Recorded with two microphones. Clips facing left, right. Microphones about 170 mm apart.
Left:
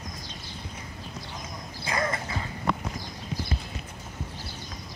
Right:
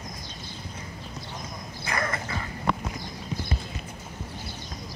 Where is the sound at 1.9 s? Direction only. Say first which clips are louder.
Left 1 dB; 20° left (ahead or behind).